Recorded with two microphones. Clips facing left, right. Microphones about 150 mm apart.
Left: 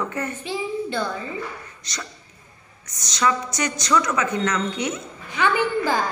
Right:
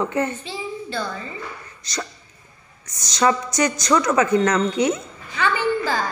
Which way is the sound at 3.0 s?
35° right (ahead or behind).